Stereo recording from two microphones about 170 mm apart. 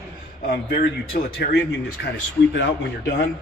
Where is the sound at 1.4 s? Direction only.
80° left.